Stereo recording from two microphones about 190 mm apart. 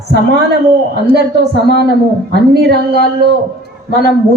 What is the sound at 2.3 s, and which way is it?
Speech, 55° right (ahead or behind).